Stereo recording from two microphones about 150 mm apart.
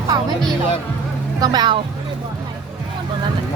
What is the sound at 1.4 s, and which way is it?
Speech, 25° right (ahead or behind).